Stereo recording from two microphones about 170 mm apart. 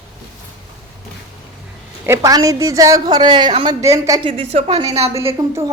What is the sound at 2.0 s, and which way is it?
A woman's voice, 15° right (ahead or behind).